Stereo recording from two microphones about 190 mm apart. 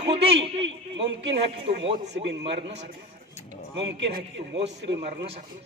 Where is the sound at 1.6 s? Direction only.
30° right (ahead or behind).